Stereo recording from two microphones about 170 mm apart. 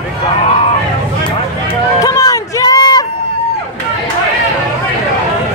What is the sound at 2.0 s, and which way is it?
Run, 20° left (ahead or behind).